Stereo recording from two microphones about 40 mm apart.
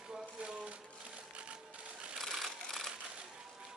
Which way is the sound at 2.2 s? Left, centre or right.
Centre.